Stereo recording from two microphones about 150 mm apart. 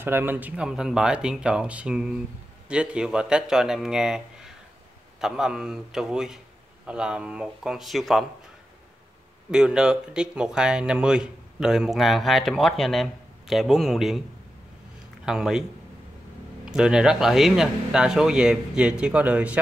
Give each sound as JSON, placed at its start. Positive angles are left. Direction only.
{"t": 0.0, "sound": "speech", "side_deg": -15}
{"t": 9.5, "sound": "speech", "side_deg": -5}
{"t": 15.2, "sound": "speech", "side_deg": -5}
{"t": 16.6, "sound": "speech", "side_deg": -5}